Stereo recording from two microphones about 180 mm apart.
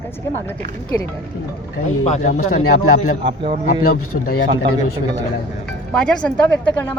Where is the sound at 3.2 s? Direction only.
30° right (ahead or behind).